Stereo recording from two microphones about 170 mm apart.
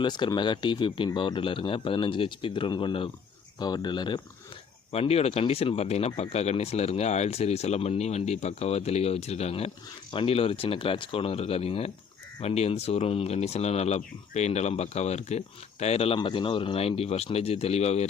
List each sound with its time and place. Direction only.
0.0 s speech: 25° left (ahead or behind)
4.9 s speech: 35° left (ahead or behind)